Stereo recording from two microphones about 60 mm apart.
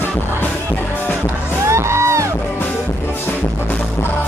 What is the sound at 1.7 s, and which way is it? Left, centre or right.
Music, right.